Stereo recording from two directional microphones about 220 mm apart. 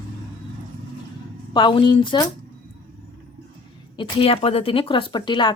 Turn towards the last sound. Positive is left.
turn(degrees=20)  # may be behind; listen again after turning